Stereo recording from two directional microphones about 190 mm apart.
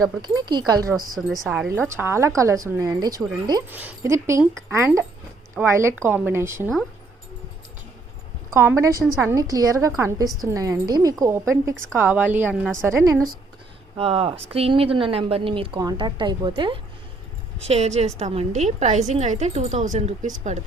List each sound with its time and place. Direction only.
0.2 s a woman's voice: 20° right (ahead or behind)
1.1 s a woman's voice: centre (ahead or behind)
8.4 s a woman's voice: 15° right (ahead or behind)
13.9 s a woman's voice: 30° right (ahead or behind)